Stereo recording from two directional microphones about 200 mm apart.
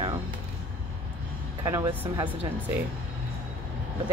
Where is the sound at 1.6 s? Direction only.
20° right (ahead or behind).